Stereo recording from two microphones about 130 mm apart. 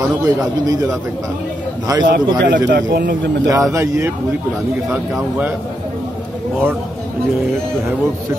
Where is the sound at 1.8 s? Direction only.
30° right (ahead or behind).